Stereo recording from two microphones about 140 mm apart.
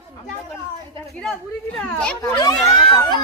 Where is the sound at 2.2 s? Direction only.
25° left (ahead or behind).